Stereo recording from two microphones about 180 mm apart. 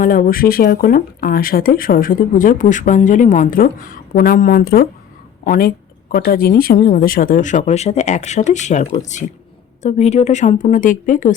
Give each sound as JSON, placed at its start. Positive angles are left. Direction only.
{"t": 0.0, "sound": "speech", "side_deg": 50}